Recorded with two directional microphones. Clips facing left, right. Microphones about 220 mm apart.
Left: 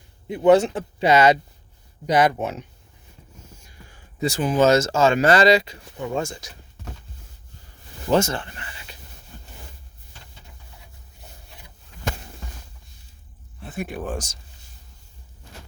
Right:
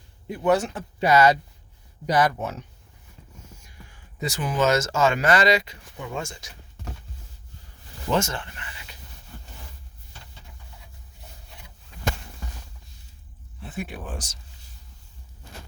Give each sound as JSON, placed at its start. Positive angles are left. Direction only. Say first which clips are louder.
{"t": 0.3, "sound": "speech", "louder": "left 6 dB", "side_deg": 25}
{"t": 3.8, "sound": "speech", "louder": "left 6 dB", "side_deg": 30}
{"t": 8.1, "sound": "speech", "louder": "left 5 dB", "side_deg": 30}
{"t": 13.7, "sound": "speech", "louder": "left 5 dB", "side_deg": 45}